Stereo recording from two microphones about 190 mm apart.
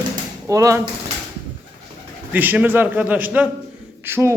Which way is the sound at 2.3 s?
10° right (ahead or behind).